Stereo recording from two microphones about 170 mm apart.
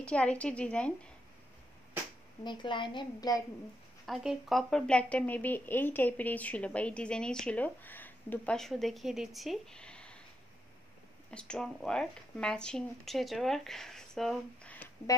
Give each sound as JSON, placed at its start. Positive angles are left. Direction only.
{"t": 0.0, "sound": "a woman's voice", "side_deg": 5}
{"t": 2.4, "sound": "a woman's voice", "side_deg": 30}
{"t": 4.0, "sound": "speech", "side_deg": 0}
{"t": 11.2, "sound": "speech", "side_deg": 5}